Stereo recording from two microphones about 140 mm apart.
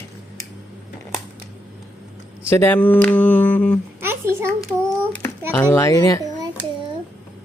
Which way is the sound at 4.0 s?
15° right (ahead or behind).